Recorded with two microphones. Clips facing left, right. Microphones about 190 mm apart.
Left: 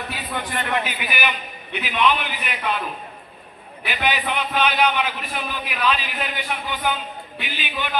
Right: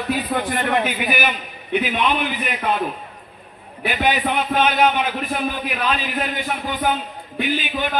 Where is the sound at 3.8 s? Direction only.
45° right (ahead or behind).